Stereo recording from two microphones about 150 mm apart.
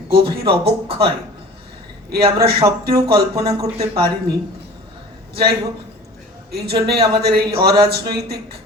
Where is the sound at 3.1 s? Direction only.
90° right.